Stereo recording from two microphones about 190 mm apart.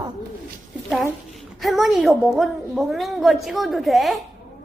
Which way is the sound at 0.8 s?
Centre (ahead or behind).